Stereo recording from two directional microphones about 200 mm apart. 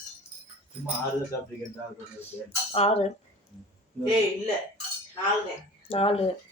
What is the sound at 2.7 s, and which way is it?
Speech, 30° left (ahead or behind).